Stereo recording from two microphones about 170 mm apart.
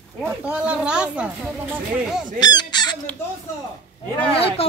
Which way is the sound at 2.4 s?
25° left (ahead or behind).